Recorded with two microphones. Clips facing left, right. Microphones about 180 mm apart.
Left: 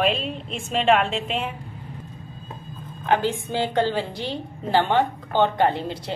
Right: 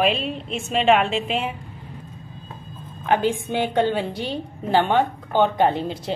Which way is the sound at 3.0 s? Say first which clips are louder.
Right 2 dB; 15° right (ahead or behind).